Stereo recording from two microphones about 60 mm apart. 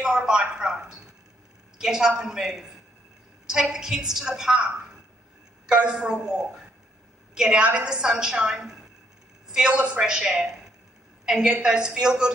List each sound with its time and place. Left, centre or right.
0.0 s a sound: centre
1.8 s a woman's voice: centre
5.7 s a woman's voice: centre
7.6 s a woman's voice: centre
9.7 s a woman's voice: right